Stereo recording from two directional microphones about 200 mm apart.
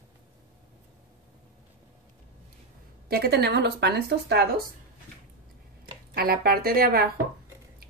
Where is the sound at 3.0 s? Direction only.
50° right (ahead or behind).